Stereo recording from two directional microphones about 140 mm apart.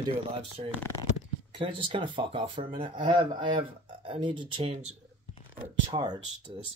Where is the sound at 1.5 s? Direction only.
35° right (ahead or behind).